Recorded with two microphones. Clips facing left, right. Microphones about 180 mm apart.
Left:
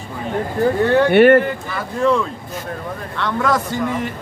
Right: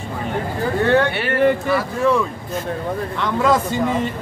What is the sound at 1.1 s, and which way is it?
Speech, 55° left (ahead or behind).